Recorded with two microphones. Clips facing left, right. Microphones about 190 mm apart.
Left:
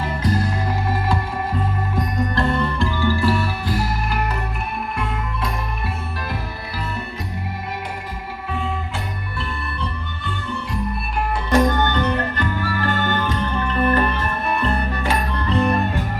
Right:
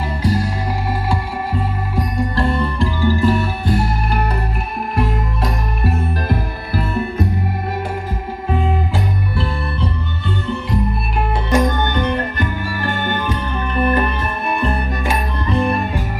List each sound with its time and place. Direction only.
0.2 s music: 10° right (ahead or behind)
4.9 s music: 40° right (ahead or behind)
11.5 s music: 15° right (ahead or behind)